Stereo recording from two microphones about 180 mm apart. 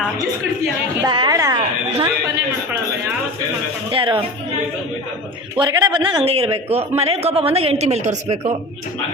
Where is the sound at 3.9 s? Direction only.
30° right (ahead or behind).